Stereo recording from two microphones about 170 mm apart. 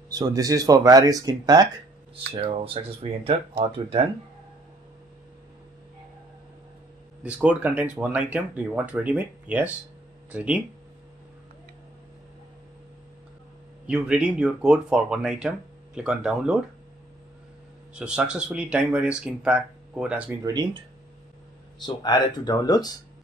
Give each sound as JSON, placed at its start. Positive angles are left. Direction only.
{"t": 0.1, "sound": "speech", "side_deg": -20}
{"t": 2.3, "sound": "speech", "side_deg": -35}
{"t": 7.2, "sound": "speech", "side_deg": -5}
{"t": 13.8, "sound": "speech", "side_deg": -5}
{"t": 17.9, "sound": "speech", "side_deg": -5}
{"t": 21.7, "sound": "speech", "side_deg": 25}